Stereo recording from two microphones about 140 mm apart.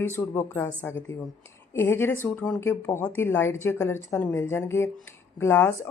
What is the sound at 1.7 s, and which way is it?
Speech, 15° left (ahead or behind).